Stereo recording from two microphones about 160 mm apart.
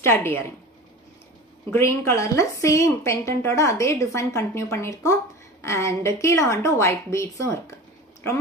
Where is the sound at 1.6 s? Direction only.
15° left (ahead or behind).